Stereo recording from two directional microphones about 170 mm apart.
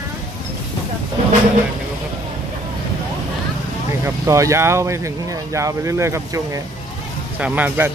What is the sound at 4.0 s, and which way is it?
Speech, 15° right (ahead or behind).